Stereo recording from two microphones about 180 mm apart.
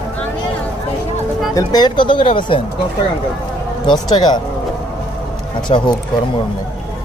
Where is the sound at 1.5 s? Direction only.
20° left (ahead or behind).